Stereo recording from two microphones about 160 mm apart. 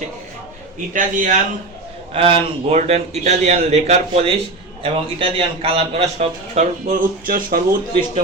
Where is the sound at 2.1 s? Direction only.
35° right (ahead or behind); by 7.6 s 65° right (ahead or behind).